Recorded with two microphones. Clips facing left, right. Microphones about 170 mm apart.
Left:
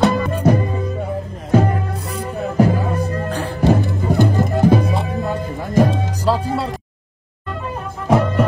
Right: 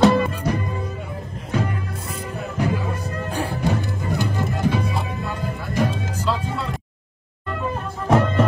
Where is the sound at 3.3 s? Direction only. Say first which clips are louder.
Left 2 dB; 10° right (ahead or behind).